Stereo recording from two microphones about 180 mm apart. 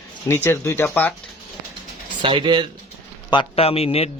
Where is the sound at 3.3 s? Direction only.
30° left (ahead or behind).